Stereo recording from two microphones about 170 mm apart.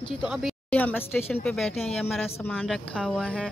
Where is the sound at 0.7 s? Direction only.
10° left (ahead or behind).